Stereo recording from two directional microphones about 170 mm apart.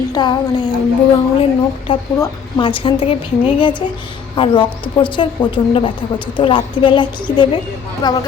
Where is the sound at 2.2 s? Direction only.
30° left (ahead or behind).